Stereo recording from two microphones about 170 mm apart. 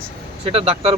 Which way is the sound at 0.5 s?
35° right (ahead or behind).